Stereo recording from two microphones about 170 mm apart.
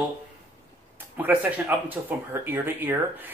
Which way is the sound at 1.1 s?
10° right (ahead or behind).